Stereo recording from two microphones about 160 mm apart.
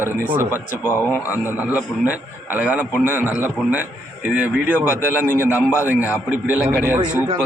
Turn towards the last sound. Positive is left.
turn(degrees=-10)  # may be behind; listen again after turning